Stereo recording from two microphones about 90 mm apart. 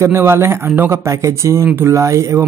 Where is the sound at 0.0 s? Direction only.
30° right (ahead or behind).